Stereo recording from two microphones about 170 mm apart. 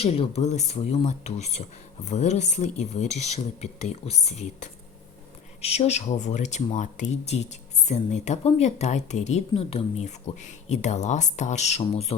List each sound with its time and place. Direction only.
0.0 s speech: 35° left (ahead or behind)